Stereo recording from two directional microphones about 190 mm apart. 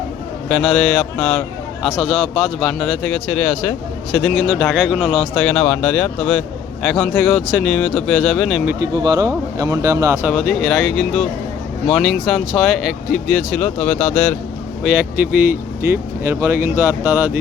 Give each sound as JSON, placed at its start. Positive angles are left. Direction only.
{"t": 0.4, "sound": "a man's voice", "side_deg": 0}
{"t": 8.6, "sound": "speech", "side_deg": -20}
{"t": 10.3, "sound": "a man's voice", "side_deg": 0}
{"t": 14.8, "sound": "a man's voice", "side_deg": -5}